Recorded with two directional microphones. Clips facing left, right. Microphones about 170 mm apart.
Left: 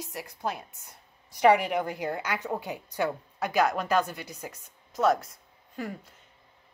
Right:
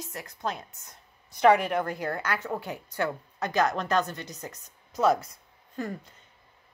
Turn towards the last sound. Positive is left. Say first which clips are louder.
# right 2 dB
turn(degrees=5)  # may be behind; listen again after turning